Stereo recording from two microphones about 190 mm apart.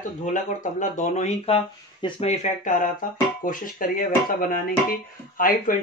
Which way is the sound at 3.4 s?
45° left (ahead or behind).